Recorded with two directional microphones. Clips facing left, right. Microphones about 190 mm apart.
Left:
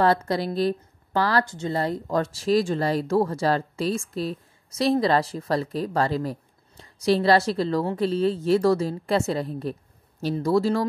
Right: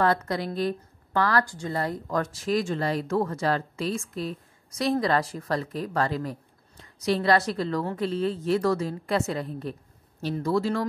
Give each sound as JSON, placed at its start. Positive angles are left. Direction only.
{"t": 0.0, "sound": "speech", "side_deg": 30}